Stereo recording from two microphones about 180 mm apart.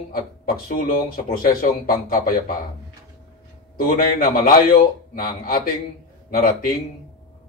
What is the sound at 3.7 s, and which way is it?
A man's voice, 50° left (ahead or behind).